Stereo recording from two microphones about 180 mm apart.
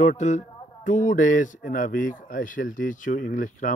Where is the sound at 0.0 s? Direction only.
40° left (ahead or behind).